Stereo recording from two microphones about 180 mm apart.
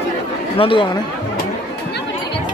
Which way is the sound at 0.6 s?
30° left (ahead or behind).